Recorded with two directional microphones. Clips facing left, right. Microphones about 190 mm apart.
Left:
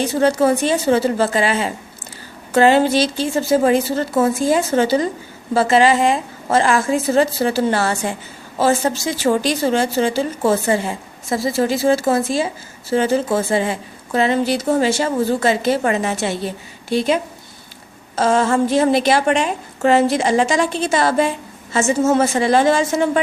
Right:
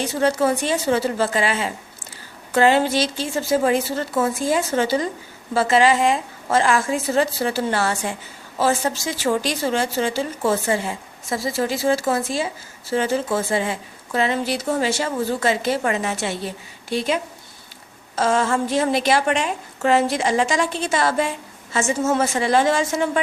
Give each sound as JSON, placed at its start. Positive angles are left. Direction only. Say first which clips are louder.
{"t": 0.0, "sound": "a woman's voice", "louder": "left 4 dB", "side_deg": 35}
{"t": 18.2, "sound": "a woman's voice", "louder": "left 4 dB", "side_deg": 35}